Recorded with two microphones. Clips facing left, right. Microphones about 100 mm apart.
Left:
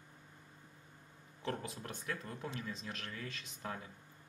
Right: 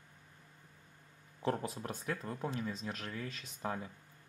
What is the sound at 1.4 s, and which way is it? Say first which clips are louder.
Speech: right 5 dB; 35° right (ahead or behind).